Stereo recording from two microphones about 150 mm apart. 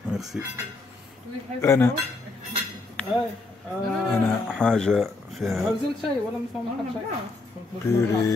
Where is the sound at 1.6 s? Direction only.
20° left (ahead or behind).